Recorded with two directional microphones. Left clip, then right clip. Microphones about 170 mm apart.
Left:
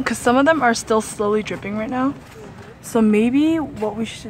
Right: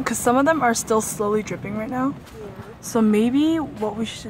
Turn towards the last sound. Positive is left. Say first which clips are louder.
# left 2 dB
turn(degrees=10)  # may be behind; listen again after turning